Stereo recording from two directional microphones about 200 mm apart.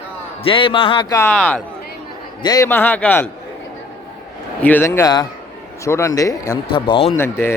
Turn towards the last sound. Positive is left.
turn(degrees=10)  # may be behind; listen again after turning